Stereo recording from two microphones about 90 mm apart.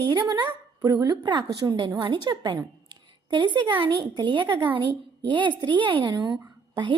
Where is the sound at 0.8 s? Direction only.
45° right (ahead or behind).